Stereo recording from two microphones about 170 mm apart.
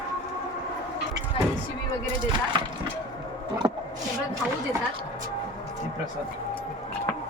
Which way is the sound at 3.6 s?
25° right (ahead or behind).